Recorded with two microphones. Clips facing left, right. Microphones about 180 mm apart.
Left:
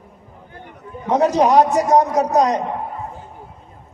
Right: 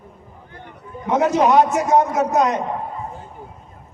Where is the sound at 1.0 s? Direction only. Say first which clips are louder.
Left 1 dB; 35° left (ahead or behind).